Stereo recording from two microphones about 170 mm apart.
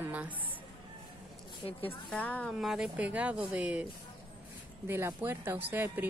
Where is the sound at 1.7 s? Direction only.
35° left (ahead or behind).